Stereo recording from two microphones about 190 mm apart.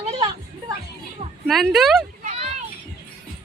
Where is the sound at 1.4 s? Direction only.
Centre (ahead or behind).